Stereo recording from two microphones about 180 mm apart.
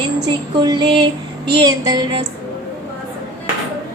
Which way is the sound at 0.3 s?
25° right (ahead or behind).